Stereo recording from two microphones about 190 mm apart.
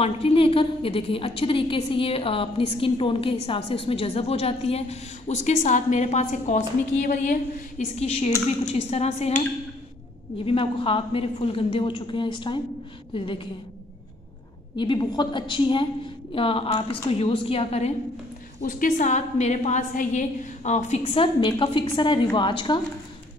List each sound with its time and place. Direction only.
0.0 s a woman's voice: 30° left (ahead or behind)
7.0 s a woman's voice: 50° left (ahead or behind)
8.0 s a woman's voice: 35° left (ahead or behind)
10.4 s a woman's voice: 30° left (ahead or behind)
14.8 s a woman's voice: 25° left (ahead or behind)
18.6 s a woman's voice: 45° left (ahead or behind); by 22.8 s 25° left (ahead or behind)